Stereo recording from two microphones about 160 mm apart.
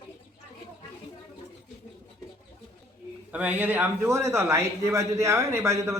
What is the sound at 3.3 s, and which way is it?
A man's voice, 10° right (ahead or behind).